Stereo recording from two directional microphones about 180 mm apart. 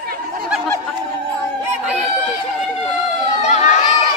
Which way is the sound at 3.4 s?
40° left (ahead or behind).